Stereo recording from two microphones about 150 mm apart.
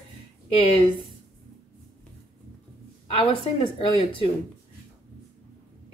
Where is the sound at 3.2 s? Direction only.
40° left (ahead or behind).